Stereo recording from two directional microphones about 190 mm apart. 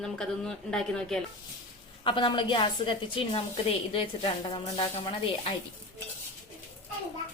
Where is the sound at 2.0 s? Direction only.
25° left (ahead or behind).